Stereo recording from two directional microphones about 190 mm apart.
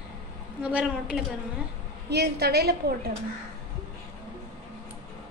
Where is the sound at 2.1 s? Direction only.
60° right (ahead or behind).